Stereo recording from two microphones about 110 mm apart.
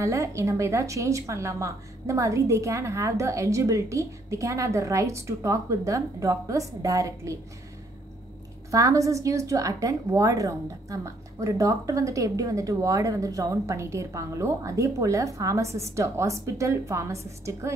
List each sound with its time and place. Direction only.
0.0 s a woman's voice: 30° right (ahead or behind)
8.6 s a woman's voice: 30° right (ahead or behind)